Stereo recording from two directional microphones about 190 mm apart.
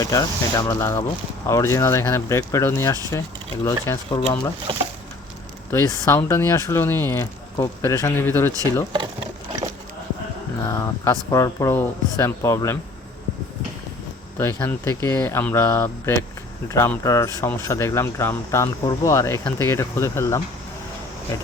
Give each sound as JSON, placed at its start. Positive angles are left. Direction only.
{"t": 0.0, "sound": "speech", "side_deg": 15}
{"t": 5.7, "sound": "speech", "side_deg": 15}
{"t": 8.9, "sound": "a sound", "side_deg": -25}
{"t": 10.6, "sound": "speech", "side_deg": 15}
{"t": 14.3, "sound": "speech", "side_deg": 10}